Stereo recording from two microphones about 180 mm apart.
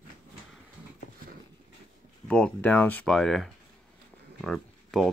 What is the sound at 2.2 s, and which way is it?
Speech, 5° left (ahead or behind).